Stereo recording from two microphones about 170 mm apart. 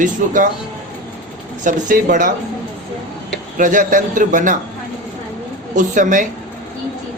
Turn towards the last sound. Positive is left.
turn(degrees=-50)  # may be behind; listen again after turning